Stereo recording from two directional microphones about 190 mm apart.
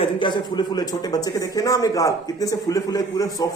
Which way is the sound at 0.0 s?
25° left (ahead or behind).